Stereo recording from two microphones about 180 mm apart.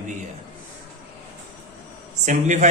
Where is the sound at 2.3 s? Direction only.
45° right (ahead or behind).